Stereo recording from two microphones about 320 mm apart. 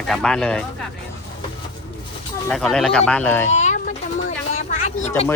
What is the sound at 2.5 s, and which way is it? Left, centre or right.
Speech, centre.